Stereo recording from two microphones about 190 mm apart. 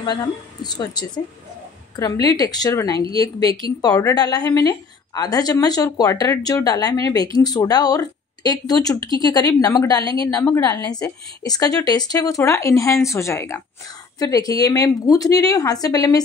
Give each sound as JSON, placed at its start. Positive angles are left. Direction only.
{"t": 0.0, "sound": "a woman's voice", "side_deg": 20}
{"t": 2.2, "sound": "a woman's voice", "side_deg": 20}
{"t": 10.2, "sound": "a woman's voice", "side_deg": 5}
{"t": 10.5, "sound": "a woman's voice", "side_deg": 20}